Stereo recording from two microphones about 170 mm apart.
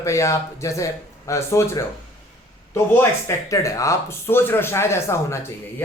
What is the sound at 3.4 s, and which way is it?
Speech, 20° left (ahead or behind).